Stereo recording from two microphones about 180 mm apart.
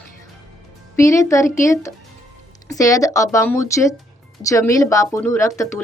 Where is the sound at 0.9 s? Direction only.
15° left (ahead or behind).